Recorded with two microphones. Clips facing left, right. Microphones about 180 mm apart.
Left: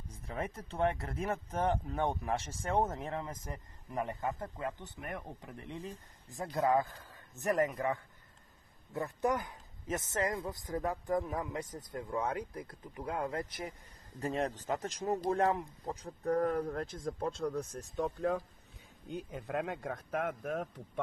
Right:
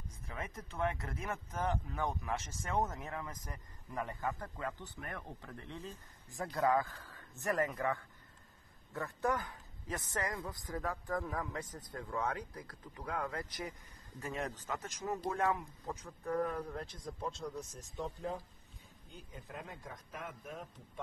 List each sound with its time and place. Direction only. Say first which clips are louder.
0.1 s speech: left 7 dB; 30° left (ahead or behind)
14.2 s speech: left 6 dB; 35° left (ahead or behind); by 18.4 s 60° left (ahead or behind)
19.0 s a man's voice: left 11 dB; 70° left (ahead or behind)